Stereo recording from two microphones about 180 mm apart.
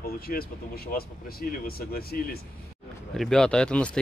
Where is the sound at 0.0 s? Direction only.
55° left (ahead or behind).